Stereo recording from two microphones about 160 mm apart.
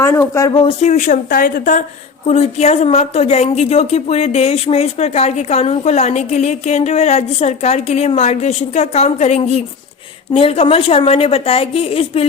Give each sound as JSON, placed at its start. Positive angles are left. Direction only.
{"t": 0.0, "sound": "speech", "side_deg": 15}
{"t": 0.5, "sound": "a woman's voice", "side_deg": 30}
{"t": 0.9, "sound": "a woman's voice", "side_deg": 50}
{"t": 2.2, "sound": "a woman's voice", "side_deg": 40}